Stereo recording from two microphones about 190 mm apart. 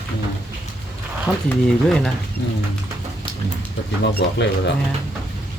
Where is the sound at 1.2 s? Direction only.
Centre (ahead or behind).